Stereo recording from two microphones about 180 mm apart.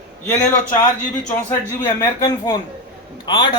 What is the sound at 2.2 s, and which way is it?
Speech, 20° left (ahead or behind).